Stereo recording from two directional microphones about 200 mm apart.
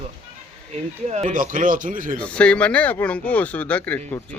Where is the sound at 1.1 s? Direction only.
40° right (ahead or behind).